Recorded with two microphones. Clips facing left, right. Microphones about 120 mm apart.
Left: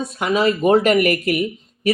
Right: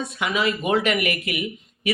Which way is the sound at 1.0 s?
40° left (ahead or behind).